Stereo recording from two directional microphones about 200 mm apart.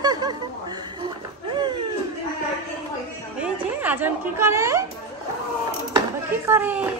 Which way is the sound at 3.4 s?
10° right (ahead or behind).